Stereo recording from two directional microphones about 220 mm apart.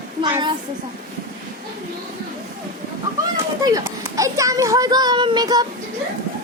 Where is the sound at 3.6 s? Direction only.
15° right (ahead or behind).